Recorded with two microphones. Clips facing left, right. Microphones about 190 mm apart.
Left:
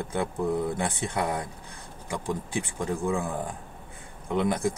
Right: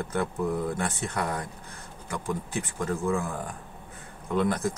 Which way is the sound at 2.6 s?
15° left (ahead or behind).